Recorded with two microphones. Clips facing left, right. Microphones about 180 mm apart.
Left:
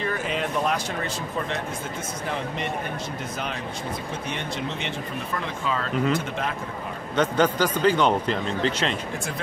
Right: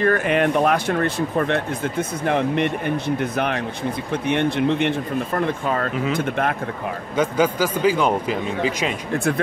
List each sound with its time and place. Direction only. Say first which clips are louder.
0.0 s speech: right 9 dB; 60° right (ahead or behind)
7.2 s a man's voice: right 2 dB; 10° right (ahead or behind)